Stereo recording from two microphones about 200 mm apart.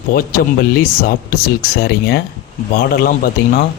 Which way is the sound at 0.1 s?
50° left (ahead or behind).